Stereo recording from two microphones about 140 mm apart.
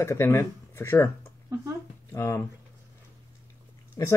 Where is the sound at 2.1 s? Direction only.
20° left (ahead or behind).